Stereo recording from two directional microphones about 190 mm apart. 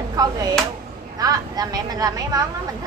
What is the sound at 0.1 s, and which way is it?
Speech, 20° right (ahead or behind).